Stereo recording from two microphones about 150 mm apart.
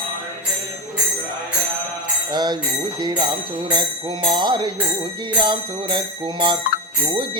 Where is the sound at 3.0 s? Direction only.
30° right (ahead or behind).